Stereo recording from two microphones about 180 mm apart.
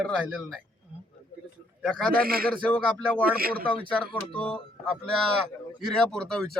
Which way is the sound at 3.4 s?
55° right (ahead or behind).